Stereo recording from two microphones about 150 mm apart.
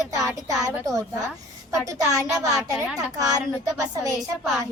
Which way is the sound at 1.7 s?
20° right (ahead or behind).